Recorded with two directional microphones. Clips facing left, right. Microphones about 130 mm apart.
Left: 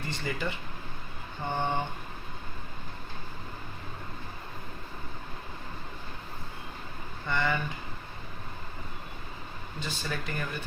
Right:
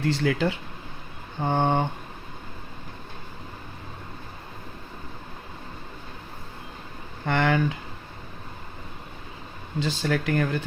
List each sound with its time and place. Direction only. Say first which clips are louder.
0.0 s speech: right 10 dB; 90° right
7.3 s speech: right 7 dB; 90° right
9.8 s speech: right 10 dB; 90° right